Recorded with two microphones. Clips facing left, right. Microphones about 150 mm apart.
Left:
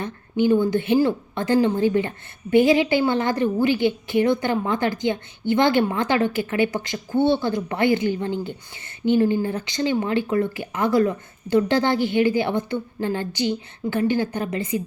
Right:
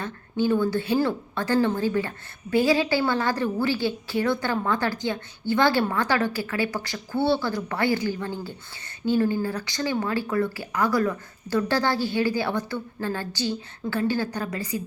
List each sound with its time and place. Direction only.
0.0 s a woman's voice: 20° left (ahead or behind)